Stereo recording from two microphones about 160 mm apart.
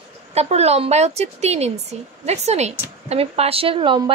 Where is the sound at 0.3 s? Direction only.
40° right (ahead or behind).